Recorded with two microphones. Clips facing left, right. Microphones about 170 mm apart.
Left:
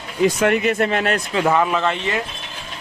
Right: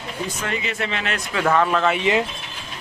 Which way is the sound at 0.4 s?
60° left (ahead or behind).